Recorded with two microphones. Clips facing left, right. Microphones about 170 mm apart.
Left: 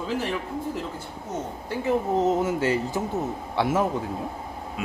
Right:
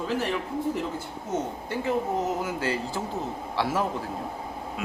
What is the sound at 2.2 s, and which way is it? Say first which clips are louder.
Speech: left 6 dB; 25° left (ahead or behind).